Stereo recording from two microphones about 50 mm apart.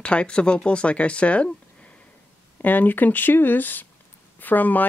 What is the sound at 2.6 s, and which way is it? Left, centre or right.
Speech, left.